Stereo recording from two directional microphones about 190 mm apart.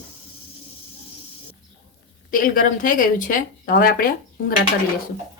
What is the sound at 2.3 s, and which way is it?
Speech, 45° left (ahead or behind).